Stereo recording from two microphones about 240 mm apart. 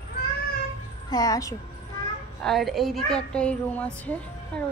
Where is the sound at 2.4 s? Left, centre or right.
Centre.